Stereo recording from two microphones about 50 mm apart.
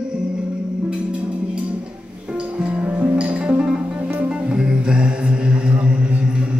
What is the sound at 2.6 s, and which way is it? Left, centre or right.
Music, right.